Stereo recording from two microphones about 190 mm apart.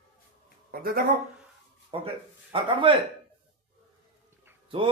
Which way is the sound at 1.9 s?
30° right (ahead or behind).